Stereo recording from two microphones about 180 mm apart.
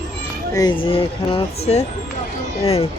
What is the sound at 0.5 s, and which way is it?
Speech, 25° left (ahead or behind).